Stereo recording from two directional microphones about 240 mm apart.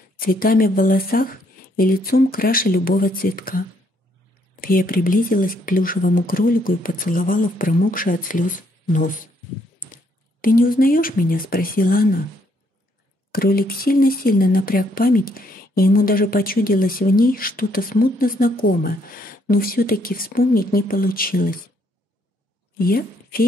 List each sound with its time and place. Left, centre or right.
0.2 s speech: left
10.4 s speech: left
13.3 s speech: left
22.8 s speech: left